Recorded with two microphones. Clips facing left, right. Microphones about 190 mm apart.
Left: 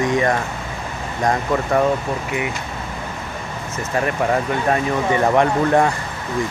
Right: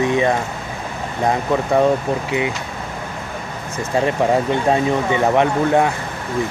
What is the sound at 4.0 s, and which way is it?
Speech, 20° right (ahead or behind).